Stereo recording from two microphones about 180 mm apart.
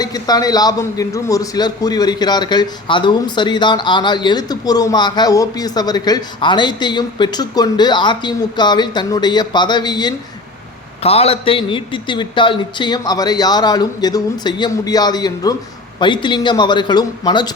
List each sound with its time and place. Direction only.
0.0 s a man's voice: 20° left (ahead or behind)
11.0 s a man's voice: 35° left (ahead or behind)